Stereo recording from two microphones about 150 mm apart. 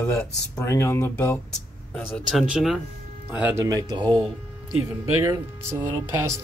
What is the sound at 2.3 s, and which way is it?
Speech, 5° right (ahead or behind).